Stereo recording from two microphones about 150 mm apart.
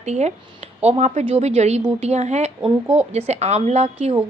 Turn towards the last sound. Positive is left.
turn(degrees=-45)  # may be behind; listen again after turning